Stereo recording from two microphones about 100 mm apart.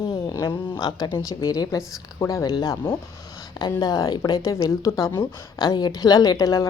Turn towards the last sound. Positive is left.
turn(degrees=40)  # may be behind; listen again after turning